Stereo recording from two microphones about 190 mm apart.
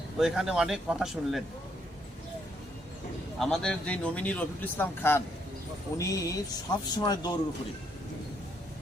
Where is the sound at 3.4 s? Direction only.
5° left (ahead or behind); by 7.3 s 20° left (ahead or behind).